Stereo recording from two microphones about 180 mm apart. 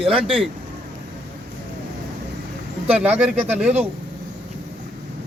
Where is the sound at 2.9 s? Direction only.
10° right (ahead or behind).